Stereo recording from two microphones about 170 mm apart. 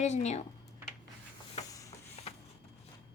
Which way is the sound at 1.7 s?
20° left (ahead or behind).